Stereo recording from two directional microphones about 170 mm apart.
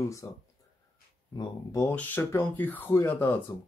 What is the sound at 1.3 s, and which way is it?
Speech, 20° left (ahead or behind).